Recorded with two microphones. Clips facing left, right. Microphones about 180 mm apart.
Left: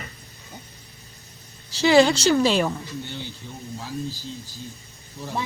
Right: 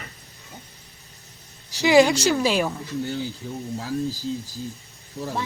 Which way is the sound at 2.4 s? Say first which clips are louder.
Left 1 dB; 5° right (ahead or behind).